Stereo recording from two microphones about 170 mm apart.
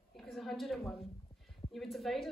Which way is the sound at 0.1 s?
Centre (ahead or behind).